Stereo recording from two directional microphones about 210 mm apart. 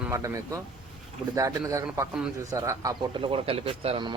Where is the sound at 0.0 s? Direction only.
15° right (ahead or behind).